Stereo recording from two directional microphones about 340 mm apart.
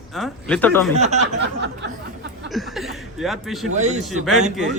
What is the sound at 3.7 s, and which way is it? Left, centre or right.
Speech, right.